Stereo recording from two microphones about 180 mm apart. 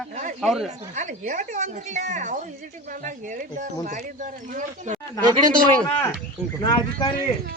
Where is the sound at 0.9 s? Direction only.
40° right (ahead or behind).